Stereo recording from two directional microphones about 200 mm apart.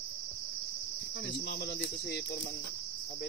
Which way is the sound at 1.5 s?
50° left (ahead or behind).